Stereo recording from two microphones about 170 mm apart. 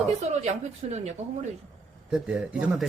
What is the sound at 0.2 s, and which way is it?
Speech, 40° right (ahead or behind).